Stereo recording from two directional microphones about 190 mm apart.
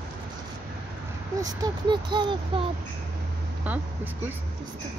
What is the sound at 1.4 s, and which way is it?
Speech, 20° right (ahead or behind).